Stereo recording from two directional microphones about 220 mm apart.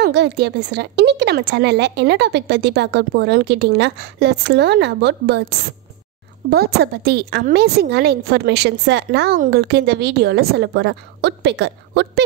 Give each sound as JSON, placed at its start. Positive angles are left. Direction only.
{"t": 0.0, "sound": "speech", "side_deg": -50}
{"t": 6.5, "sound": "speech", "side_deg": -45}